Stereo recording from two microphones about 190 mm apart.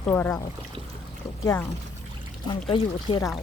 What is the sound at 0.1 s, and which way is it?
Speech, 15° left (ahead or behind).